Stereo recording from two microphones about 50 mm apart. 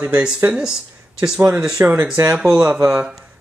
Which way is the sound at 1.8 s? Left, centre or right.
Right.